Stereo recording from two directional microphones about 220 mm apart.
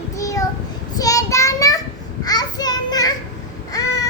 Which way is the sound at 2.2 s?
15° left (ahead or behind).